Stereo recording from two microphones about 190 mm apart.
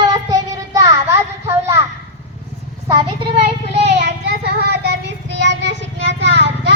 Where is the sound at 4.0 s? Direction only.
60° right (ahead or behind).